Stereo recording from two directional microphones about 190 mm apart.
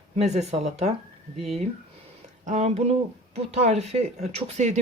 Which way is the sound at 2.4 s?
40° right (ahead or behind).